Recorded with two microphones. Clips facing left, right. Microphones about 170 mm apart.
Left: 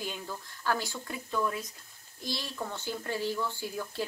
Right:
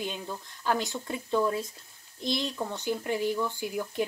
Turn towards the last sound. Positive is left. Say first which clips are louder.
# right 5 dB
turn(degrees=-15)  # may be behind; listen again after turning